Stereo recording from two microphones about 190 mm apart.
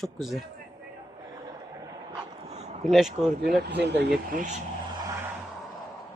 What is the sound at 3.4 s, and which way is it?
Speech, 60° right (ahead or behind).